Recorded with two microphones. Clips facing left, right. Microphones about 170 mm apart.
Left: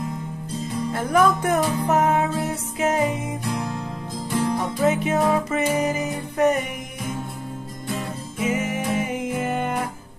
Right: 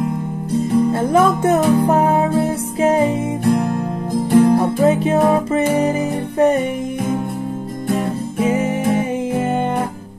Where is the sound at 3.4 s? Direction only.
55° right (ahead or behind).